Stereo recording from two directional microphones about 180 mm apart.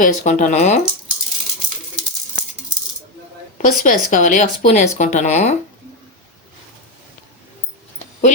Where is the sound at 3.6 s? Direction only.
50° left (ahead or behind).